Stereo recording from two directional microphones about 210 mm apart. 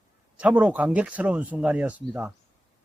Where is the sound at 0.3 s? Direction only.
5° right (ahead or behind).